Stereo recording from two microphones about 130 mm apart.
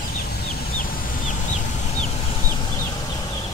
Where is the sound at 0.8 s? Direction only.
70° left (ahead or behind).